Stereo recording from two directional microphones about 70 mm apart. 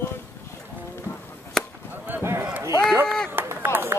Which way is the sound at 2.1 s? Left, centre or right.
Right.